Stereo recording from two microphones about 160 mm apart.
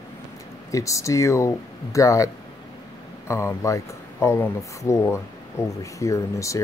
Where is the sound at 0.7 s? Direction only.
20° left (ahead or behind).